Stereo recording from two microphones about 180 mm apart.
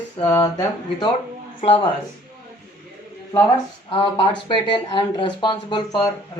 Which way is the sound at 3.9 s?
30° left (ahead or behind).